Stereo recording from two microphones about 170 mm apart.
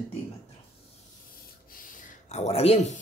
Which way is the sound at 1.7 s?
50° left (ahead or behind).